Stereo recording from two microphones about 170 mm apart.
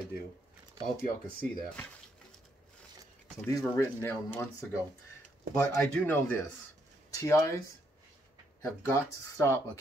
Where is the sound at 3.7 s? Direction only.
15° left (ahead or behind).